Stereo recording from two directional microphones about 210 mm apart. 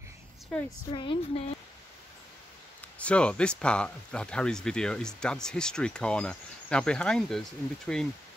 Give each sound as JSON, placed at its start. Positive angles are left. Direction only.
{"t": 0.5, "sound": "a woman's voice", "side_deg": 10}
{"t": 0.9, "sound": "speech", "side_deg": 25}
{"t": 3.0, "sound": "speech", "side_deg": 5}